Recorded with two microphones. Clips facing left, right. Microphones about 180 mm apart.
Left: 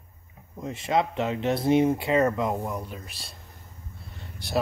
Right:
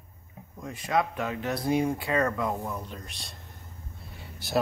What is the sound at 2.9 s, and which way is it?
Speech, 5° left (ahead or behind).